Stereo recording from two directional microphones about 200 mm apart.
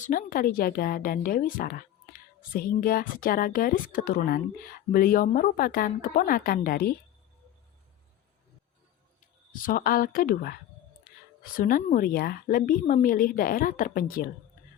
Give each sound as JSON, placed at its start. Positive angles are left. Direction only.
{"t": 0.0, "sound": "a woman's voice", "side_deg": 45}
{"t": 9.5, "sound": "a woman's voice", "side_deg": 45}